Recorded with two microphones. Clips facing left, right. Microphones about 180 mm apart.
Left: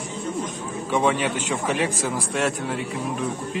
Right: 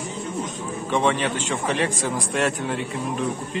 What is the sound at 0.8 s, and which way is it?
A man's voice, 10° left (ahead or behind).